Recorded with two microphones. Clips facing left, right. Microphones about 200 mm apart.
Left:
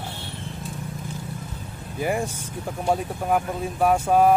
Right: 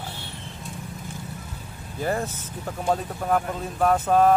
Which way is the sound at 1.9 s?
10° left (ahead or behind).